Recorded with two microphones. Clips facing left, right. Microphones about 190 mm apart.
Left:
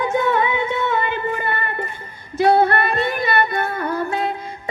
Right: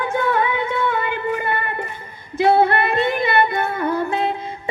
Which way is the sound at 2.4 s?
20° right (ahead or behind).